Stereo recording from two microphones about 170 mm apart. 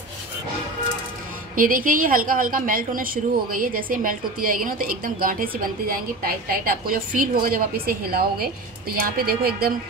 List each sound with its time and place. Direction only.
1.5 s a woman's voice: 55° right (ahead or behind)